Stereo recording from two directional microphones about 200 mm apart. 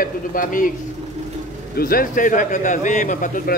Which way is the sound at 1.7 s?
45° left (ahead or behind).